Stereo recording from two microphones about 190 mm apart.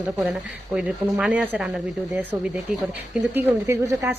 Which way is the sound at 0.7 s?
5° right (ahead or behind).